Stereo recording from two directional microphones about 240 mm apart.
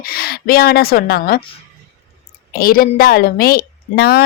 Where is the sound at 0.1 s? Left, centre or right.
Left.